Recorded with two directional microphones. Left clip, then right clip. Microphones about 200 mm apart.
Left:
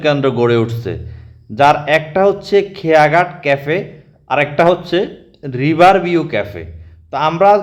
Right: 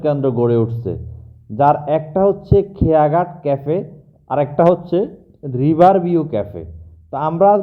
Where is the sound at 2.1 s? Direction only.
20° left (ahead or behind).